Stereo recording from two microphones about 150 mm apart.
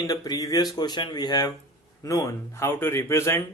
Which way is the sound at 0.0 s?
25° left (ahead or behind).